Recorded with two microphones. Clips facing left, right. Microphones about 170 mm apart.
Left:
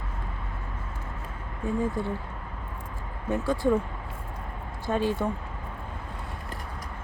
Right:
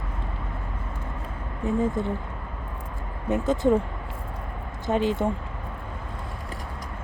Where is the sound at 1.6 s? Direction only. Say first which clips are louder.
Right 3 dB; 20° right (ahead or behind).